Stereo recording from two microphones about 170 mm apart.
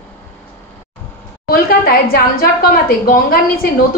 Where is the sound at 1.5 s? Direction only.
60° left (ahead or behind).